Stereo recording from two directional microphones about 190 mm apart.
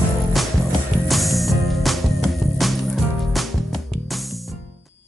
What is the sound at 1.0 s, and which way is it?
Music, centre (ahead or behind).